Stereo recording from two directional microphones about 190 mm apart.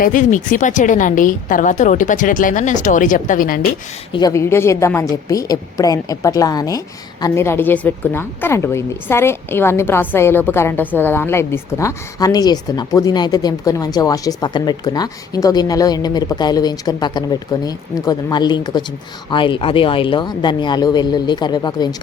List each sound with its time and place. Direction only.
0.0 s a woman's voice: 45° left (ahead or behind)
4.1 s a woman's voice: 20° left (ahead or behind)